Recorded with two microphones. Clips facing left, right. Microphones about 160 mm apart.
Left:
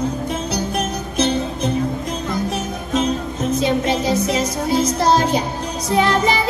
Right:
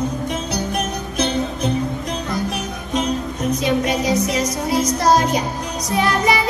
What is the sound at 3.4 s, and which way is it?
Music, 25° left (ahead or behind).